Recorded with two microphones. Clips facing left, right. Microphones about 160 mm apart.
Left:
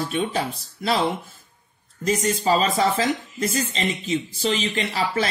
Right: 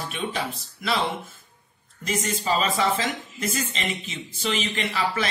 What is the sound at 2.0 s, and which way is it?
Speech, 35° left (ahead or behind).